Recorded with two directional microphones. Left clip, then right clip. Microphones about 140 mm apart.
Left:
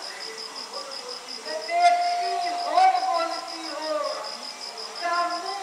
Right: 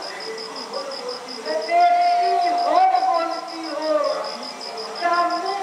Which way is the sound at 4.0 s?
30° right (ahead or behind).